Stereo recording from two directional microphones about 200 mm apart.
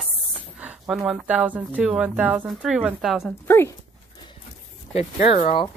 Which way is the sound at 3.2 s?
10° left (ahead or behind).